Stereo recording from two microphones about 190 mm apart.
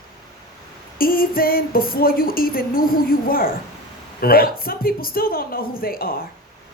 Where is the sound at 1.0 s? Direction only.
50° left (ahead or behind).